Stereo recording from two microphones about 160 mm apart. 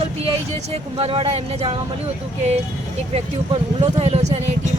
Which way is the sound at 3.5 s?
35° right (ahead or behind).